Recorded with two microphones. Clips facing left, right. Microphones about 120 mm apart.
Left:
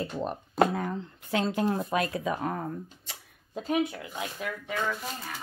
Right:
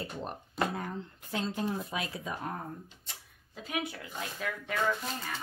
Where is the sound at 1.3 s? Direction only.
70° left (ahead or behind).